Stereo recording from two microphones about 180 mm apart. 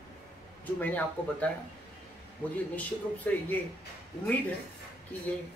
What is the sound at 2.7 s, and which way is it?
Speech, 10° left (ahead or behind).